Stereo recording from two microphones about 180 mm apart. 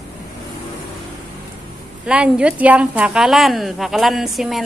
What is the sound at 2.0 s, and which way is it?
A woman's voice, 5° right (ahead or behind).